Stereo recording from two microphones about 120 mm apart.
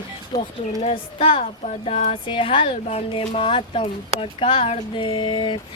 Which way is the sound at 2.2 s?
45° left (ahead or behind).